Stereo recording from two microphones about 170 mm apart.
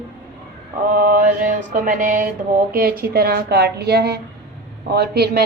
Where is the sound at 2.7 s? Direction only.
60° right (ahead or behind).